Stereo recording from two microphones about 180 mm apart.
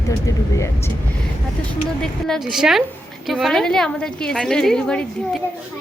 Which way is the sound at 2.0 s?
5° left (ahead or behind).